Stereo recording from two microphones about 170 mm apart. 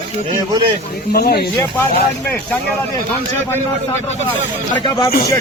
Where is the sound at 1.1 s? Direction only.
65° left (ahead or behind).